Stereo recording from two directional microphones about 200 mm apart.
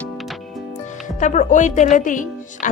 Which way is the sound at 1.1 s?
40° left (ahead or behind).